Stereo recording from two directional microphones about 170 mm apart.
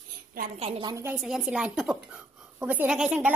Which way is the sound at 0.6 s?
35° right (ahead or behind).